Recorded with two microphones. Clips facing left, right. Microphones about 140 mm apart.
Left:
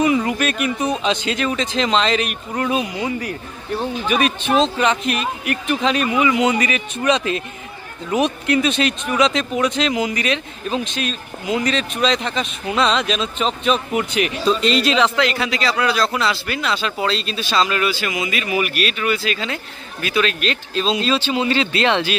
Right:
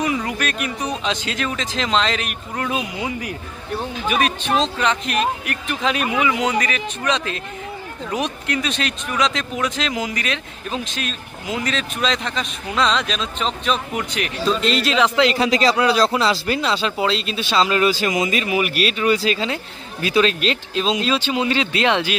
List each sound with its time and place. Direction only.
0.0 s speech: 5° left (ahead or behind)
3.0 s speech: 10° right (ahead or behind)
4.2 s speech: 5° left (ahead or behind)
15.0 s a man's voice: 25° right (ahead or behind)
17.0 s a man's voice: 20° right (ahead or behind); by 18.4 s 35° right (ahead or behind)
18.4 s a man's voice: 20° right (ahead or behind)